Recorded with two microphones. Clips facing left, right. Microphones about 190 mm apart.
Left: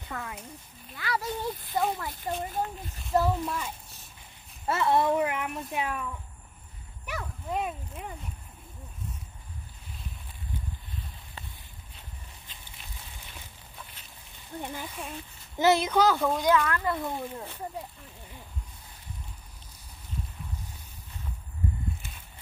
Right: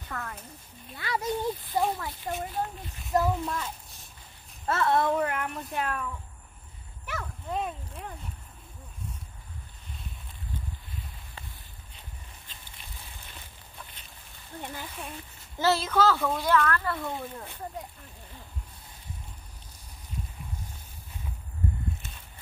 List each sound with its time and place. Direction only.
0.1 s speech: 10° left (ahead or behind)
0.9 s speech: 20° right (ahead or behind)
1.7 s speech: 10° right (ahead or behind)
7.1 s speech: 10° left (ahead or behind)
14.6 s speech: 15° left (ahead or behind)